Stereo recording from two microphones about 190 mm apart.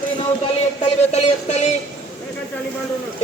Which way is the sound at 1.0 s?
35° left (ahead or behind).